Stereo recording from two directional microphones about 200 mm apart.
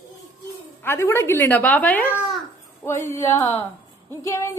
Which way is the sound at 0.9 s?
15° left (ahead or behind).